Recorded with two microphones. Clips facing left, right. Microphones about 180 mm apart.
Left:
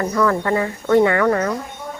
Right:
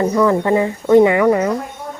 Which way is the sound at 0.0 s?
20° right (ahead or behind).